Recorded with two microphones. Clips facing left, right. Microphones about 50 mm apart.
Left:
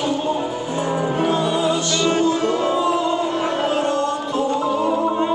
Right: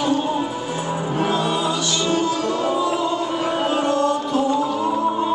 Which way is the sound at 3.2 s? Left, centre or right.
Centre.